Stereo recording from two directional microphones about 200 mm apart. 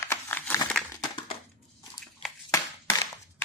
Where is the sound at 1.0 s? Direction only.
25° left (ahead or behind).